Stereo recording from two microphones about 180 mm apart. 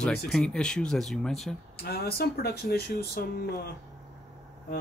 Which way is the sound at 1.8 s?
60° left (ahead or behind).